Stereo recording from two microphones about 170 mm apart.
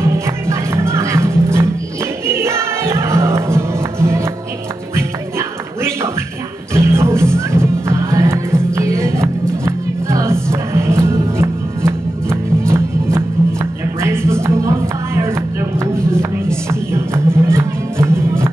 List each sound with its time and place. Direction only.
0.0 s music: 15° right (ahead or behind)
6.7 s music: 15° right (ahead or behind)
16.9 s music: 15° right (ahead or behind)